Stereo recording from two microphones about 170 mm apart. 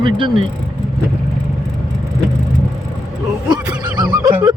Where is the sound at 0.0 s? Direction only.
30° right (ahead or behind).